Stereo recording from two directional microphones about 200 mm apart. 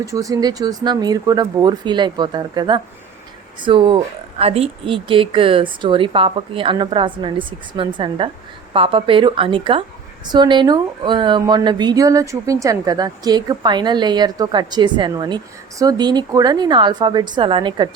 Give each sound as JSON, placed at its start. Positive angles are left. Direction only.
{"t": 0.0, "sound": "speech", "side_deg": -15}